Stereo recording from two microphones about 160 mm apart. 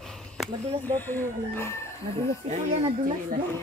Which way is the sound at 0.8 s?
10° left (ahead or behind).